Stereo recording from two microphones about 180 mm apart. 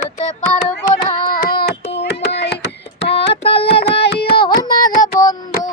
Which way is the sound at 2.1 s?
70° left (ahead or behind).